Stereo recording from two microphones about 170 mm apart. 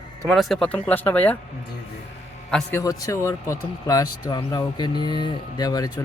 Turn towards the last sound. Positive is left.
turn(degrees=20)  # may be behind; listen again after turning